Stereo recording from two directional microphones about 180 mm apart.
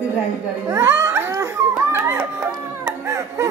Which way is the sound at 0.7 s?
15° right (ahead or behind).